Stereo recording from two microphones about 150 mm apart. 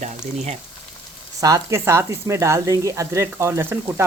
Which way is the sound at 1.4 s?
20° right (ahead or behind).